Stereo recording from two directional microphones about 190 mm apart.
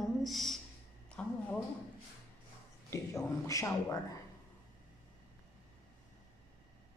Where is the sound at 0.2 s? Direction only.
Centre (ahead or behind).